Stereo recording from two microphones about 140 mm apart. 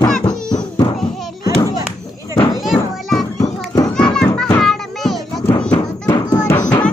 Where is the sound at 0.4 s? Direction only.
5° left (ahead or behind).